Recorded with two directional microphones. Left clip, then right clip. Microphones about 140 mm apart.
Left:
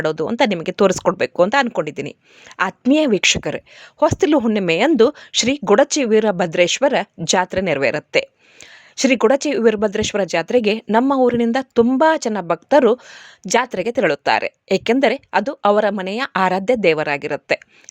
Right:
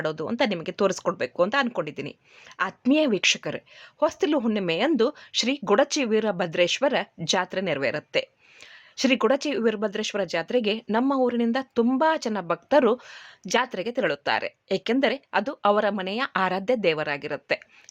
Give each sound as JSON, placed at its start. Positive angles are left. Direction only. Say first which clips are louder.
{"t": 0.0, "sound": "speech", "louder": "left 8 dB", "side_deg": 65}